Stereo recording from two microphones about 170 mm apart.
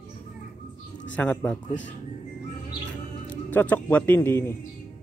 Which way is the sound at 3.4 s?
10° left (ahead or behind).